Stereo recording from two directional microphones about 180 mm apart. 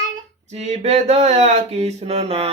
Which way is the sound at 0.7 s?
35° right (ahead or behind).